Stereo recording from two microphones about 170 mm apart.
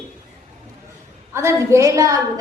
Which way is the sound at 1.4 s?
15° right (ahead or behind).